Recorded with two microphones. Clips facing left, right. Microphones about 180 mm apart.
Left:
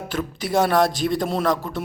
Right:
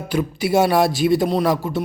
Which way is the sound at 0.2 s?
5° right (ahead or behind).